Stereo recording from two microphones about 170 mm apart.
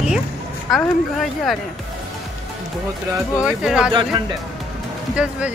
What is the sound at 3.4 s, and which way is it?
Speech, 5° right (ahead or behind).